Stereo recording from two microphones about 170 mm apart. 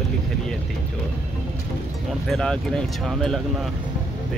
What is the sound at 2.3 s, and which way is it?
Speech, 5° left (ahead or behind).